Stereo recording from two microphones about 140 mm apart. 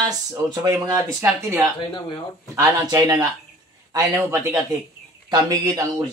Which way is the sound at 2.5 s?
25° right (ahead or behind).